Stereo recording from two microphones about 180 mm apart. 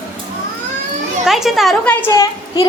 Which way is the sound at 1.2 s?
Centre (ahead or behind).